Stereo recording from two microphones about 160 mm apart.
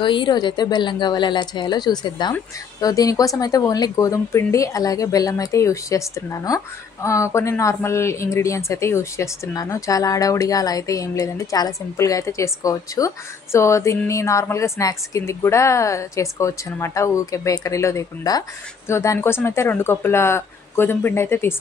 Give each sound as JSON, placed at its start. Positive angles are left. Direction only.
{"t": 0.0, "sound": "speech", "side_deg": 30}